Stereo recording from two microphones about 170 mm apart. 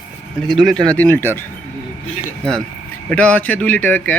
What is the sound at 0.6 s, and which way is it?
Speech, 5° left (ahead or behind).